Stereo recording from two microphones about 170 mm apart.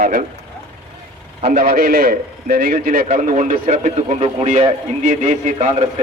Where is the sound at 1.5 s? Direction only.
55° right (ahead or behind).